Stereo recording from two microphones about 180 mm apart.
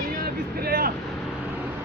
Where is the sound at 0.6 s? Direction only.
55° right (ahead or behind).